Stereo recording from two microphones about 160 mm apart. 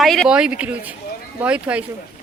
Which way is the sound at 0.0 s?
Centre (ahead or behind).